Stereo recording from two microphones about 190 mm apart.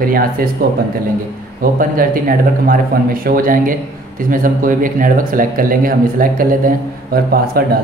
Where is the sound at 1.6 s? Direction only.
50° right (ahead or behind).